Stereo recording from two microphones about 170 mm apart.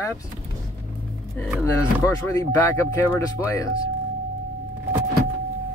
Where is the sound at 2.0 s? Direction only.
20° left (ahead or behind).